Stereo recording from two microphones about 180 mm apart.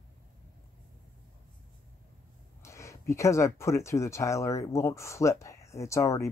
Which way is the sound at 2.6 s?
15° left (ahead or behind).